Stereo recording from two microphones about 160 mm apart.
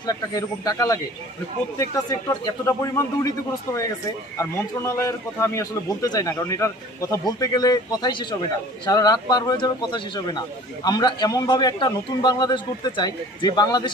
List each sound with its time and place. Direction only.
0.0 s a man's voice: 25° left (ahead or behind)
2.0 s a man's voice: 20° left (ahead or behind)